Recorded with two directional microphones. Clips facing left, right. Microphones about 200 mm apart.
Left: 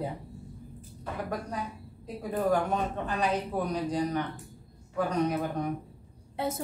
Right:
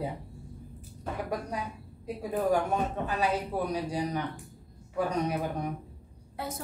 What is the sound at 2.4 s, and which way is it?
Speech, 10° right (ahead or behind).